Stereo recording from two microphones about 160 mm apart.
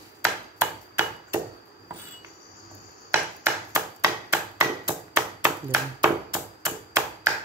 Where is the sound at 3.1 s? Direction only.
15° right (ahead or behind).